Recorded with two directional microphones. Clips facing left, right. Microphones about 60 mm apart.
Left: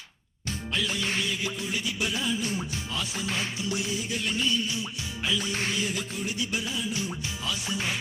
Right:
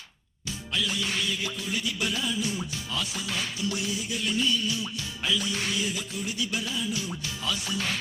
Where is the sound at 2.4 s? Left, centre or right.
Left; by 8.0 s centre.